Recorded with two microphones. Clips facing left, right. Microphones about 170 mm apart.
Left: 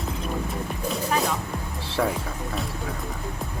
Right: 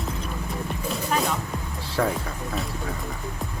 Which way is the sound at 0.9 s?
Centre (ahead or behind).